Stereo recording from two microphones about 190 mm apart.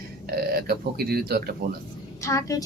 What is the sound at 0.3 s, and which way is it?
Speech, 55° right (ahead or behind).